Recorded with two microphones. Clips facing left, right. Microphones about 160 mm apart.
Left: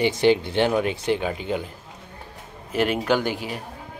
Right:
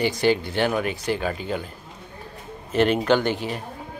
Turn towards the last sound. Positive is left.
turn(degrees=10)  # may be behind; listen again after turning